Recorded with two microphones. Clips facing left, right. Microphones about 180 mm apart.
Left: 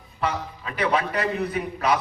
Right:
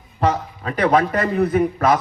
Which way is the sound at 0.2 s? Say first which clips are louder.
Right 7 dB; 45° right (ahead or behind).